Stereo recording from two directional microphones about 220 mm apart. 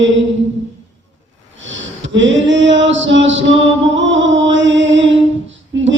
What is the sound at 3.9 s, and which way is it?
Music, 55° right (ahead or behind).